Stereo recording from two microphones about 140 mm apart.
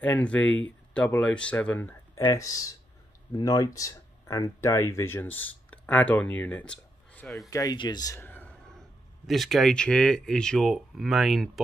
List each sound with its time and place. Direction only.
0.0 s speech: 10° left (ahead or behind)
2.3 s speech: 25° left (ahead or behind); by 7.4 s 5° left (ahead or behind)
7.4 s speech: 25° left (ahead or behind); by 11.6 s centre (ahead or behind)